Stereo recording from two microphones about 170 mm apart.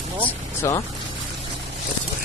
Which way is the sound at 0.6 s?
15° left (ahead or behind).